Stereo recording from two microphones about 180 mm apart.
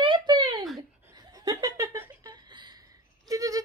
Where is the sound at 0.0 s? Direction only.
25° right (ahead or behind).